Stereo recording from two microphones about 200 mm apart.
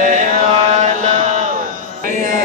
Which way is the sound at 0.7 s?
35° right (ahead or behind).